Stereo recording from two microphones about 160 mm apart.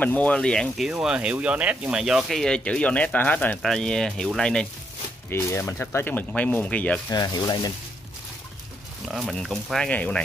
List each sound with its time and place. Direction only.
0.0 s speech: 10° left (ahead or behind)
5.3 s speech: 15° left (ahead or behind)
7.1 s speech: 25° left (ahead or behind)
9.1 s speech: centre (ahead or behind)